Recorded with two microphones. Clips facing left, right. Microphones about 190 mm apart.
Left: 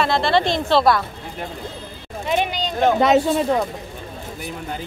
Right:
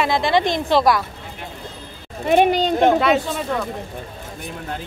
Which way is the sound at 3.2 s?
40° left (ahead or behind).